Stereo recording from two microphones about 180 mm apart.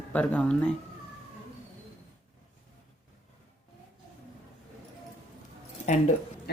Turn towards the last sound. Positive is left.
turn(degrees=65)  # may be behind; listen again after turning